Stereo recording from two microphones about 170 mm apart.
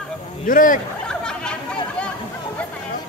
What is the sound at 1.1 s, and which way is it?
Chatter, 5° left (ahead or behind).